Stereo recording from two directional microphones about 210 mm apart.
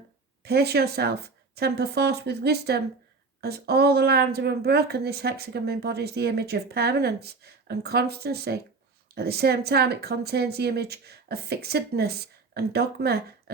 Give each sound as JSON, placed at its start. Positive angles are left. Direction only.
{"t": 0.4, "sound": "speech", "side_deg": -50}